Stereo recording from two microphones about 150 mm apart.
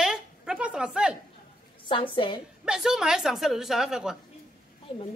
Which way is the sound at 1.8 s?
35° left (ahead or behind).